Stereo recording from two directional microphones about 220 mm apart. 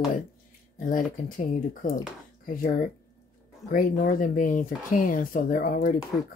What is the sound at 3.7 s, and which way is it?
Speech, 40° left (ahead or behind).